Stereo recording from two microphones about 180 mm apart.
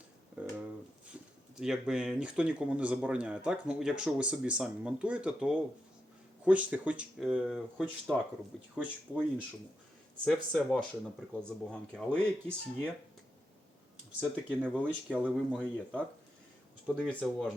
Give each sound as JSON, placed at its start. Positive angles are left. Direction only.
{"t": 0.4, "sound": "a sound", "side_deg": -5}
{"t": 1.5, "sound": "speech", "side_deg": -5}
{"t": 10.2, "sound": "speech", "side_deg": 0}
{"t": 14.2, "sound": "speech", "side_deg": -5}